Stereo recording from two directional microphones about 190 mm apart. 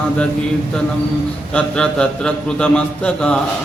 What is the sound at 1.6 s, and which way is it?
Mantra, 5° left (ahead or behind).